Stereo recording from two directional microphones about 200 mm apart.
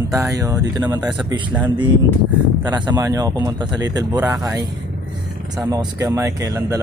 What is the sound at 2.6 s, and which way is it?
Speech, 20° right (ahead or behind).